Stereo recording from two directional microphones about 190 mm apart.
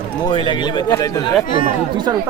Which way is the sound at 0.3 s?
25° left (ahead or behind).